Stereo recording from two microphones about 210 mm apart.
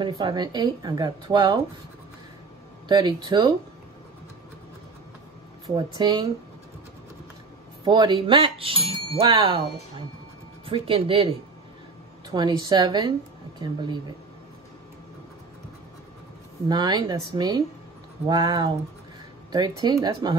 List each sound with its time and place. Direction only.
0.0 s speech: 20° right (ahead or behind)
2.9 s speech: 20° right (ahead or behind)
5.8 s speech: 20° right (ahead or behind)
7.8 s speech: 20° right (ahead or behind)
12.3 s speech: 20° right (ahead or behind)
16.6 s speech: 20° right (ahead or behind)